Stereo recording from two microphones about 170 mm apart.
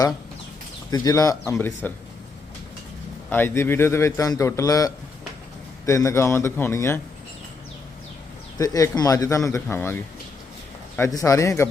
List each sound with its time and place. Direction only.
0.9 s speech: 20° left (ahead or behind)
3.2 s a man's voice: 10° left (ahead or behind)
8.5 s a man's voice: 20° left (ahead or behind)